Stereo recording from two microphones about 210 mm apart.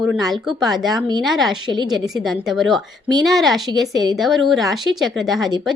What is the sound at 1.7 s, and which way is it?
Speech, 20° right (ahead or behind).